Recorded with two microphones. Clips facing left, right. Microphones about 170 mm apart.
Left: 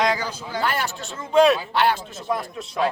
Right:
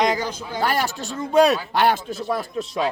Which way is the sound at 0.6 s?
40° right (ahead or behind).